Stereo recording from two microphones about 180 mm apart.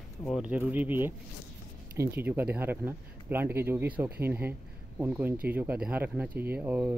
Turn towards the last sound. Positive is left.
turn(degrees=-10)  # may be behind; listen again after turning